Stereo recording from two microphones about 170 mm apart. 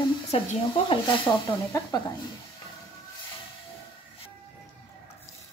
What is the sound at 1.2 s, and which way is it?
Speech, 20° left (ahead or behind).